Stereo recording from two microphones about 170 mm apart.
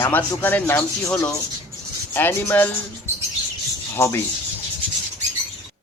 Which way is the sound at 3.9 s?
15° left (ahead or behind).